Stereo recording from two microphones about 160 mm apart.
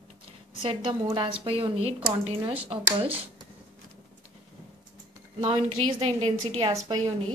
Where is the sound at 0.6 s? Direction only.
35° right (ahead or behind).